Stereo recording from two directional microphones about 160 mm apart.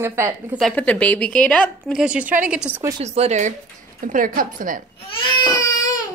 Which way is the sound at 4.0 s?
55° right (ahead or behind).